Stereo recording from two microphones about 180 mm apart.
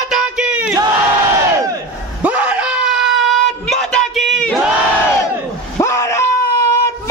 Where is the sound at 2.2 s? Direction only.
5° right (ahead or behind).